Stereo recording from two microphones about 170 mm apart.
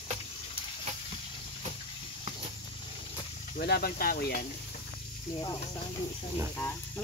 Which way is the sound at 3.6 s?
65° left (ahead or behind).